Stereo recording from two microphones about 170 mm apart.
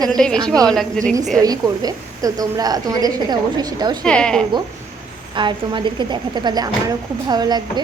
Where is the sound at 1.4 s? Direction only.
20° right (ahead or behind).